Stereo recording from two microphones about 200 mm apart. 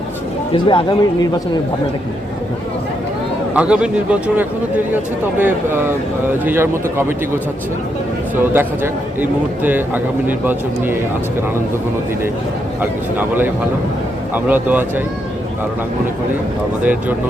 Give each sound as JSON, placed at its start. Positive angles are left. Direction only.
{"t": 0.5, "sound": "speech", "side_deg": 25}
{"t": 3.5, "sound": "speech", "side_deg": -5}
{"t": 8.4, "sound": "speech", "side_deg": -10}
{"t": 13.1, "sound": "speech", "side_deg": -10}
{"t": 16.8, "sound": "speech", "side_deg": -10}